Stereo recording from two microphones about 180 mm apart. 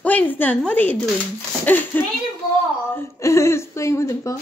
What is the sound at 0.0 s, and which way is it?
A woman's voice, 10° left (ahead or behind).